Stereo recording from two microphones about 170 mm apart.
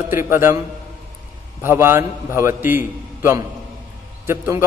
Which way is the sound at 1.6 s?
15° right (ahead or behind).